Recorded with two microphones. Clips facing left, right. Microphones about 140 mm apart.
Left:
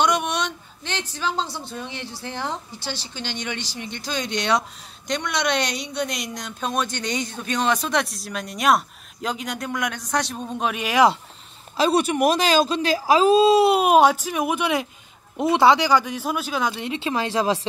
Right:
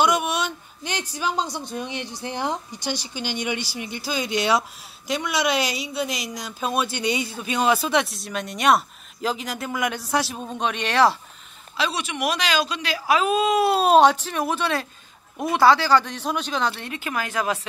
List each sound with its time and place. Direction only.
0.0 s speech: 5° right (ahead or behind)
11.7 s speech: 45° left (ahead or behind); by 13.7 s 30° left (ahead or behind)
13.7 s speech: 10° left (ahead or behind); by 17.6 s 30° left (ahead or behind)